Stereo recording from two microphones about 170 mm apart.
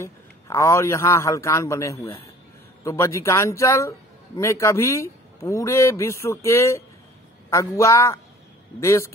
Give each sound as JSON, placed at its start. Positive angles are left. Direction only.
{"t": 0.0, "sound": "speech", "side_deg": 15}